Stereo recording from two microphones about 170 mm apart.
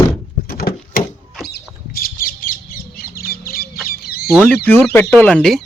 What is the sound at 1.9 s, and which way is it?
Bird, 55° left (ahead or behind).